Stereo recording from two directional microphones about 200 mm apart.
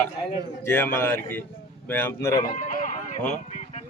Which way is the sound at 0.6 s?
10° left (ahead or behind).